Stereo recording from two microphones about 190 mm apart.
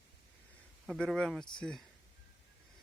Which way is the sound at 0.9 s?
5° left (ahead or behind).